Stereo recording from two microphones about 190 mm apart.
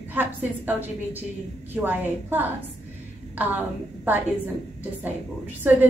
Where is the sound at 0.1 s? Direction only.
10° right (ahead or behind).